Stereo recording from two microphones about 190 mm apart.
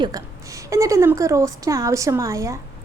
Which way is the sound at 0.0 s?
20° right (ahead or behind).